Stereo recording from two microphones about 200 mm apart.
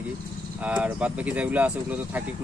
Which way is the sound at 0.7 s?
5° right (ahead or behind).